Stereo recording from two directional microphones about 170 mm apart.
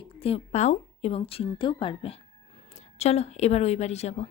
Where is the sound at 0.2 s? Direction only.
35° left (ahead or behind).